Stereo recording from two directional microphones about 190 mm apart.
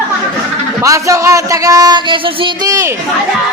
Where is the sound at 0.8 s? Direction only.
15° right (ahead or behind).